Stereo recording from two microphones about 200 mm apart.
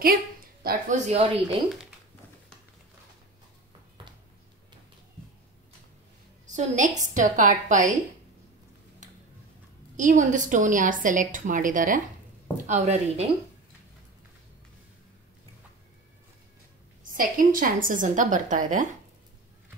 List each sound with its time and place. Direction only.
0.0 s a woman's voice: 45° right (ahead or behind)
6.4 s a woman's voice: 35° right (ahead or behind)
9.9 s a woman's voice: 40° right (ahead or behind)
17.1 s a woman's voice: 45° right (ahead or behind)